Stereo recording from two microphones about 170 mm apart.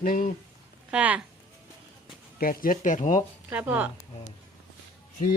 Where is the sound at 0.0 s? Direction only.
55° left (ahead or behind).